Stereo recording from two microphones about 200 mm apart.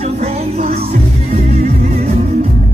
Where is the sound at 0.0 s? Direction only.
30° right (ahead or behind).